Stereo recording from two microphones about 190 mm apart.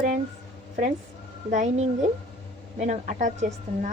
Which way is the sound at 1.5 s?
40° right (ahead or behind).